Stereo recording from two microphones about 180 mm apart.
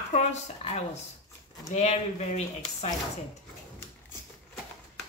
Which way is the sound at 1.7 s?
35° left (ahead or behind).